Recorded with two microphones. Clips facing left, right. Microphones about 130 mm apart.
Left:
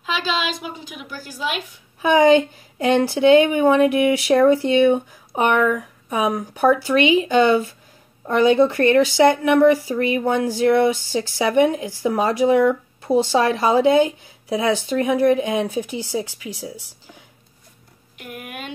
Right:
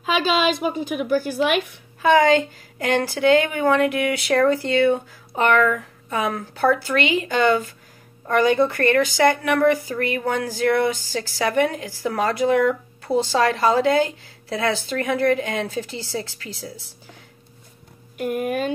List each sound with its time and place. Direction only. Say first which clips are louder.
0.0 s a woman's voice: right 4 dB; 55° right (ahead or behind)
2.0 s a woman's voice: left 2 dB; 20° left (ahead or behind)
18.1 s speech: right 12 dB; 45° right (ahead or behind)